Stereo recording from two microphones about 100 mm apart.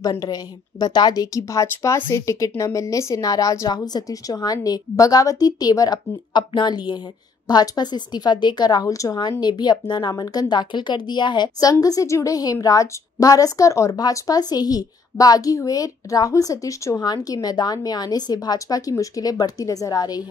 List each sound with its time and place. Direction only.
0.2 s a woman's voice: 40° left (ahead or behind)
9.4 s speech: 45° left (ahead or behind)